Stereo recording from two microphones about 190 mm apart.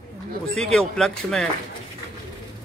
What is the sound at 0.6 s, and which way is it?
Speech, 5° left (ahead or behind).